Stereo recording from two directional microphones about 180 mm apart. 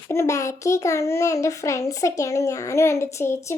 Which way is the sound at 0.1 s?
15° left (ahead or behind).